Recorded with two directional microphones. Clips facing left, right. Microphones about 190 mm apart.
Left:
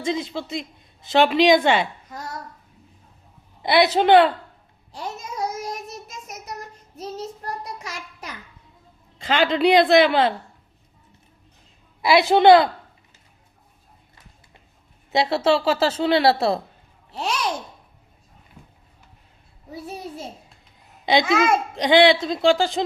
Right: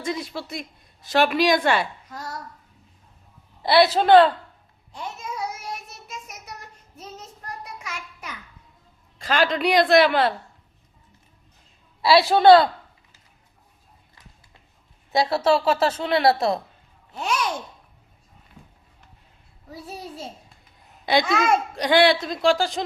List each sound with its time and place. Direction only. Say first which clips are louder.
0.0 s a woman's voice: left 3 dB; 20° left (ahead or behind)
3.6 s a woman's voice: even; 20° left (ahead or behind)
4.9 s child singing: left 2 dB; 40° left (ahead or behind)
9.1 s a woman's voice: left 2 dB; 20° left (ahead or behind)
12.0 s a woman's voice: even; 20° left (ahead or behind)
15.1 s a woman's voice: left 1 dB; 25° left (ahead or behind)
21.2 s speech: left 3 dB; centre (ahead or behind)
21.8 s a woman's voice: left 4 dB; 20° left (ahead or behind)